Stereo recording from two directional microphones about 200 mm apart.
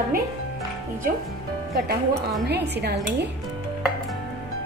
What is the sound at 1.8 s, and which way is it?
A woman's voice, 50° right (ahead or behind).